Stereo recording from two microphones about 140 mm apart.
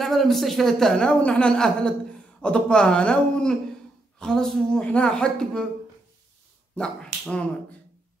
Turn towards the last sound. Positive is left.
turn(degrees=10)  # may be behind; listen again after turning